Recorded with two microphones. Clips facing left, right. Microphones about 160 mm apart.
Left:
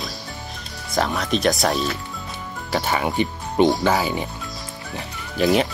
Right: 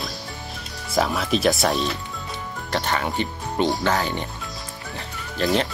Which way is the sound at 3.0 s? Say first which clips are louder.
Left 3 dB; 15° left (ahead or behind).